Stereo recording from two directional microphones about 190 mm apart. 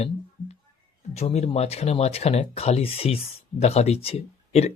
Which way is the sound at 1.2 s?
35° left (ahead or behind).